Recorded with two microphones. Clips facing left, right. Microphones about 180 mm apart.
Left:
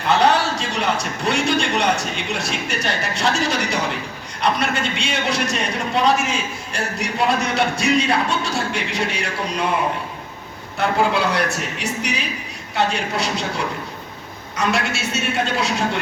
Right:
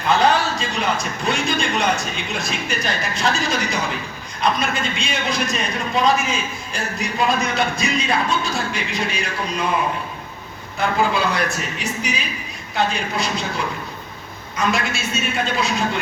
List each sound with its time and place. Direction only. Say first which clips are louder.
0.2 s a man's voice: left 1 dB; 75° left (ahead or behind)
10.8 s a man's voice: left 1 dB; 75° left (ahead or behind)
14.5 s a man's voice: even; 75° left (ahead or behind)